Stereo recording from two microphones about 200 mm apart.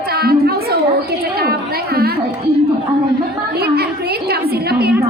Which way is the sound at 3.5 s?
50° right (ahead or behind).